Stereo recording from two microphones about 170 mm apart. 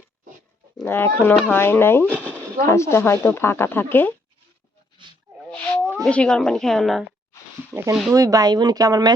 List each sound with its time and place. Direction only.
0.9 s speech: 10° left (ahead or behind)
5.5 s wild animals: 5° left (ahead or behind)
6.0 s speech: 5° left (ahead or behind)
7.7 s speech: 20° right (ahead or behind)